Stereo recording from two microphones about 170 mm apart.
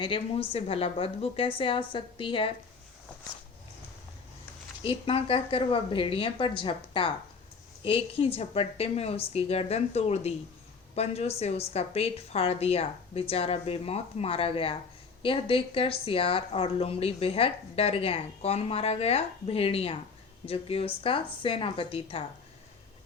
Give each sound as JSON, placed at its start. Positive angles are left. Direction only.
{"t": 0.0, "sound": "speech", "side_deg": 30}
{"t": 4.8, "sound": "speech", "side_deg": 35}